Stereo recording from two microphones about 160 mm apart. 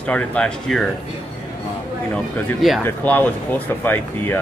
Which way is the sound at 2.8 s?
10° left (ahead or behind).